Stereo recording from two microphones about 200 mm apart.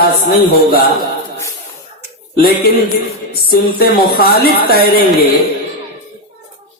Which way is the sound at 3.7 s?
50° left (ahead or behind).